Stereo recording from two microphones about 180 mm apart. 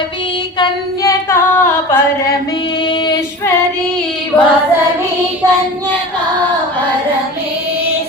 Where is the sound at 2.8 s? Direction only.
25° left (ahead or behind).